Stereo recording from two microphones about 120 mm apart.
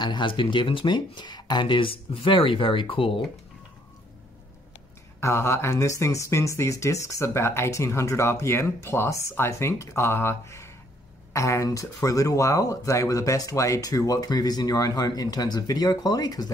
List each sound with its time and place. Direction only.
0.0 s speech: 40° left (ahead or behind)
5.2 s speech: 25° left (ahead or behind)